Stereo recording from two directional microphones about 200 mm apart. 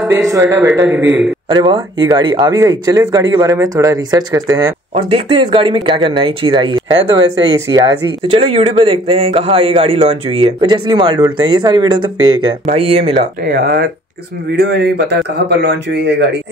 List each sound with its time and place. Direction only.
0.1 s a man's voice: 15° right (ahead or behind)
1.5 s speech: 20° right (ahead or behind)
13.2 s speech: 55° right (ahead or behind)